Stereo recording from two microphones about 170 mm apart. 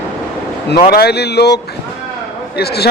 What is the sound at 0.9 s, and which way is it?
Speech, 70° left (ahead or behind).